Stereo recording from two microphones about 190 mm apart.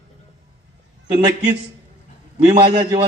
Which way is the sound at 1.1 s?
25° right (ahead or behind).